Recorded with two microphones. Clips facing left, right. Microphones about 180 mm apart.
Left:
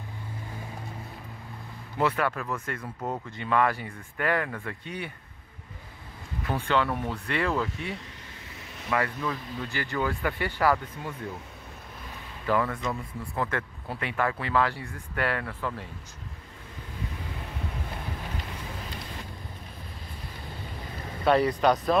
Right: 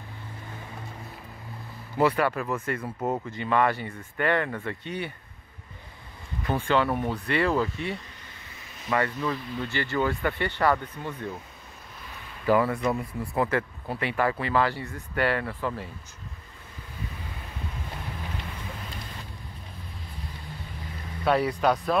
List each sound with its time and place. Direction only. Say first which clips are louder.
2.0 s speech: right 3 dB; 5° right (ahead or behind)
6.4 s speech: right 2 dB; 5° right (ahead or behind)
12.4 s speech: right 4 dB; 10° right (ahead or behind)
13.5 s speech: right 5 dB; 5° right (ahead or behind)
21.3 s speech: left 1 dB; 5° right (ahead or behind)